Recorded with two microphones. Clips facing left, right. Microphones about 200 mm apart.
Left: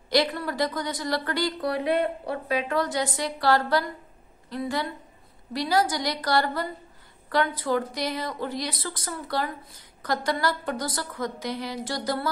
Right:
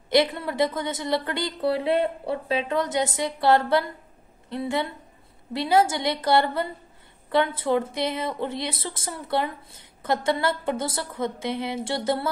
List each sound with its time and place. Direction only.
0.1 s speech: 20° right (ahead or behind)